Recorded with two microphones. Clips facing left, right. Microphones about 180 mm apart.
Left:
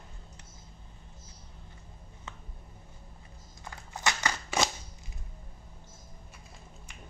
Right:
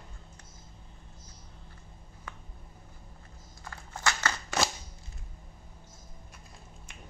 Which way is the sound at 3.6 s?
15° left (ahead or behind).